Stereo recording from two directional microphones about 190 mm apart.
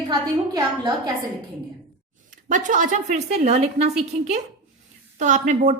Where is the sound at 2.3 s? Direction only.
40° right (ahead or behind).